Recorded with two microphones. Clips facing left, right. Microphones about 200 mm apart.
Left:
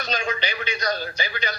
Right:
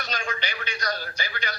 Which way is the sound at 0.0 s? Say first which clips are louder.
Left 5 dB; 20° left (ahead or behind).